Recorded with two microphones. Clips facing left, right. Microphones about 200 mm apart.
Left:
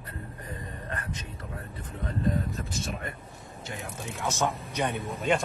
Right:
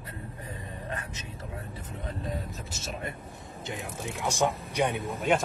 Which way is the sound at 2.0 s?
Centre (ahead or behind).